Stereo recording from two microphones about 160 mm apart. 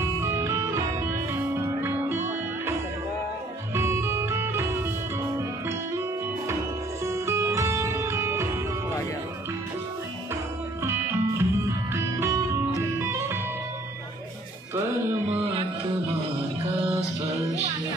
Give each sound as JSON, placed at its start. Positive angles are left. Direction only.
{"t": 0.2, "sound": "music", "side_deg": -15}
{"t": 3.7, "sound": "music", "side_deg": -15}
{"t": 7.1, "sound": "music", "side_deg": -15}
{"t": 10.8, "sound": "music", "side_deg": -15}